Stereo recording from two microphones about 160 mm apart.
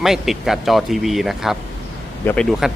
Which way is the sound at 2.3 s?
15° left (ahead or behind).